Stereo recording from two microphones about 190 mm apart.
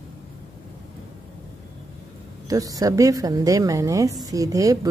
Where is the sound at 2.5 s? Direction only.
20° right (ahead or behind).